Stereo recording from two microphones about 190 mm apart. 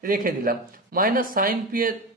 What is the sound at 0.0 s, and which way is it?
A man's voice, 45° right (ahead or behind).